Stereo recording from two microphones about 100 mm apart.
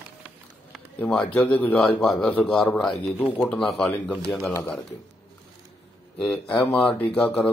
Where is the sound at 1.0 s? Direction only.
10° left (ahead or behind).